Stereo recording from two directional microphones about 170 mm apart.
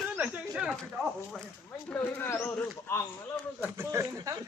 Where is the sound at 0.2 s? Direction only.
5° right (ahead or behind).